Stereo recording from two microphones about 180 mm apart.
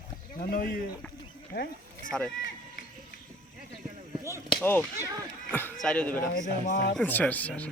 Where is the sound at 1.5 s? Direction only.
60° left (ahead or behind).